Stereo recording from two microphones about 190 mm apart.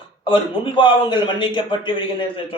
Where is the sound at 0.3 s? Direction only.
25° left (ahead or behind).